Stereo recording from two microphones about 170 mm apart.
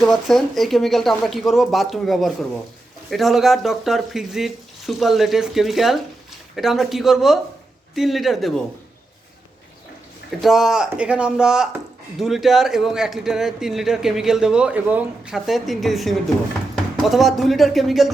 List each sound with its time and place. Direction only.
0.0 s a man's voice: centre (ahead or behind)
10.4 s a man's voice: centre (ahead or behind)